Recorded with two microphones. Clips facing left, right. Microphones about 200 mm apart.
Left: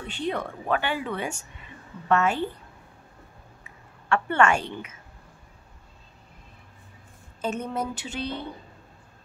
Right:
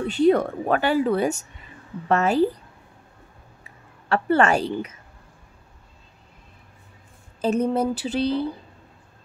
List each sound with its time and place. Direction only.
0.0 s speech: 40° right (ahead or behind)
4.1 s speech: 35° right (ahead or behind)
7.4 s speech: 35° right (ahead or behind)